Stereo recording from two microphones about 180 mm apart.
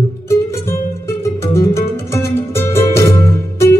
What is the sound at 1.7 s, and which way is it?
Music, 15° left (ahead or behind).